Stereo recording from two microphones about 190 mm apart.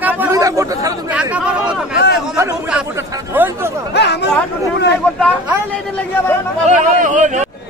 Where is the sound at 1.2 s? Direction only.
5° right (ahead or behind).